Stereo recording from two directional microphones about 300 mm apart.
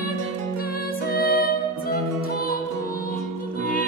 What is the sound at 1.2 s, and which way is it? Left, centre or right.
Music, left.